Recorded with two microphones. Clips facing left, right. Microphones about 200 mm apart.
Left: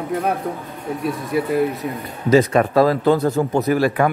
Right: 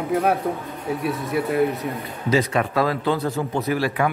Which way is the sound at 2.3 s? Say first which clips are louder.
Left 6 dB; 45° left (ahead or behind).